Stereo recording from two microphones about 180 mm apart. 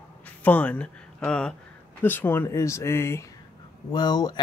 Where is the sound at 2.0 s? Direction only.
10° left (ahead or behind).